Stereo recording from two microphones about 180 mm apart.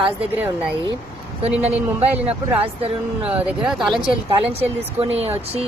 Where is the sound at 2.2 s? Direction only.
5° right (ahead or behind).